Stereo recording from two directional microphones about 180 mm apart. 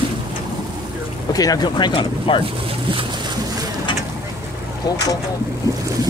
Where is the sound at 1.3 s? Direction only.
20° left (ahead or behind).